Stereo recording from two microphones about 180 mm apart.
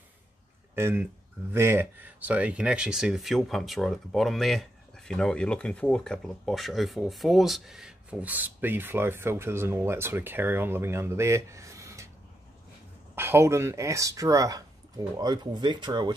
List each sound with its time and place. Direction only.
0.7 s speech: 15° right (ahead or behind)
13.1 s speech: 15° right (ahead or behind)